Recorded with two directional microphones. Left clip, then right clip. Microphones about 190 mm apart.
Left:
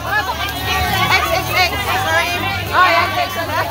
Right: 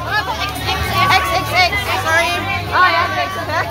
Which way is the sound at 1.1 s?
20° right (ahead or behind).